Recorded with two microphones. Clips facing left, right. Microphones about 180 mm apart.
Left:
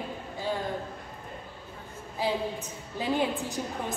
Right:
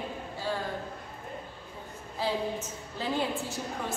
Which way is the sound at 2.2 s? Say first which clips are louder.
Left 1 dB; 15° left (ahead or behind).